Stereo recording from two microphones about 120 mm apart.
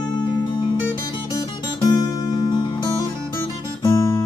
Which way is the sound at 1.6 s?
35° left (ahead or behind).